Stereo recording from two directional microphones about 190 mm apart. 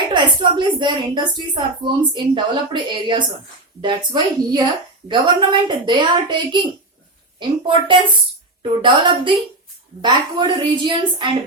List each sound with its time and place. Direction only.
0.1 s a woman's voice: 25° right (ahead or behind)